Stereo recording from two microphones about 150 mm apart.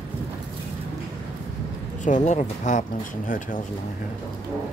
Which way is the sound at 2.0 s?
55° left (ahead or behind).